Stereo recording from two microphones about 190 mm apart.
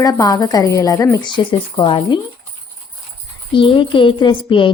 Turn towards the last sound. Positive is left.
turn(degrees=25)  # may be behind; listen again after turning